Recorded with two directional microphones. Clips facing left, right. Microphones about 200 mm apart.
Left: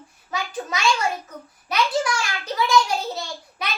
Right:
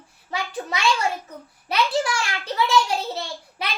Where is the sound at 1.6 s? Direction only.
30° right (ahead or behind).